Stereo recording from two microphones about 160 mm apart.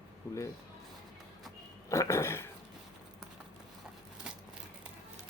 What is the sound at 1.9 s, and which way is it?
Dog, 20° left (ahead or behind).